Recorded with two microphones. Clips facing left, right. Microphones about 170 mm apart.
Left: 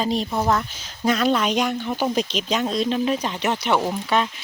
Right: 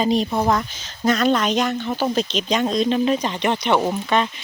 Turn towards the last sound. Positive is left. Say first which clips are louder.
# right 2 dB
turn(degrees=5)  # may be behind; listen again after turning